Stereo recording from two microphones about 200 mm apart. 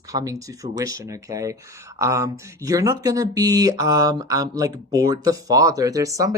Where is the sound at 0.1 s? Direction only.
15° right (ahead or behind).